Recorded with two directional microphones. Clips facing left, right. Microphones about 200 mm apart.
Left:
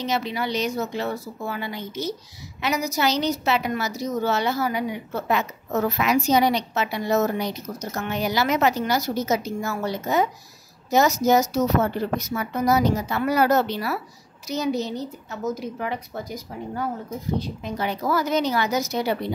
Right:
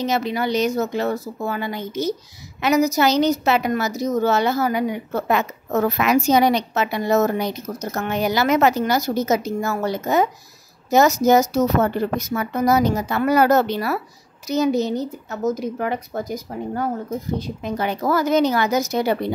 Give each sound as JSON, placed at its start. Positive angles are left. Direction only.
{"t": 0.0, "sound": "a woman's voice", "side_deg": -45}